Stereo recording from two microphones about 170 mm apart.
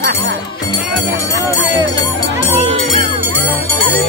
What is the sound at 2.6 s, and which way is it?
Music, 30° right (ahead or behind).